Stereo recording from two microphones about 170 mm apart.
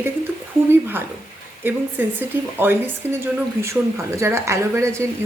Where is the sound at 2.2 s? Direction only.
10° right (ahead or behind).